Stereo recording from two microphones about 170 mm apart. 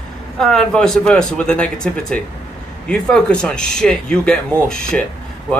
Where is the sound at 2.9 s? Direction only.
5° left (ahead or behind).